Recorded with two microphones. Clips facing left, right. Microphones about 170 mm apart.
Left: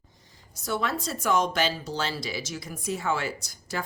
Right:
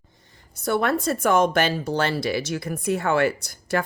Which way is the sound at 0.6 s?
60° right (ahead or behind).